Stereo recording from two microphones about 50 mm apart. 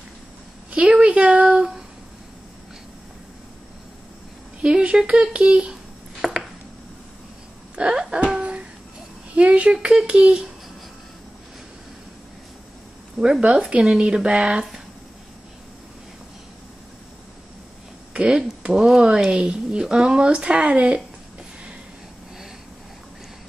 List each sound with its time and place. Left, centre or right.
0.7 s a sound: right
4.6 s speech: right
6.2 s chopping: centre
7.7 s music: centre
9.3 s speech: right
13.2 s speech: centre
18.1 s a sound: right
18.6 s speech: centre